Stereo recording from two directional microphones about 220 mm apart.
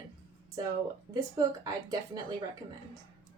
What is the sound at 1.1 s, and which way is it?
A woman's voice, 15° right (ahead or behind).